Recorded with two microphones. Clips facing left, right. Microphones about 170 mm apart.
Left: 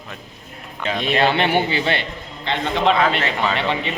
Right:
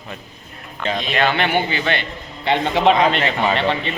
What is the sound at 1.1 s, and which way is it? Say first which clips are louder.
Speech: left 1 dB; 30° left (ahead or behind).